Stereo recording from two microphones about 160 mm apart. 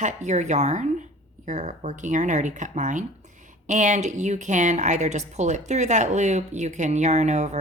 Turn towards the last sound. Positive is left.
turn(degrees=-45)  # may be behind; listen again after turning